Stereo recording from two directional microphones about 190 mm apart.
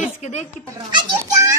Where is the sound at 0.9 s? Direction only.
15° right (ahead or behind).